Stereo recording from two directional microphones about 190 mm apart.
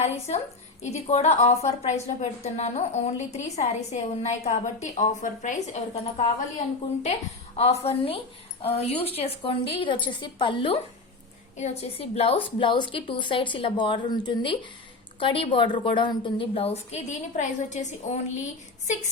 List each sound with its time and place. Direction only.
0.0 s a woman's voice: 35° left (ahead or behind)
7.0 s a woman's voice: 35° left (ahead or behind)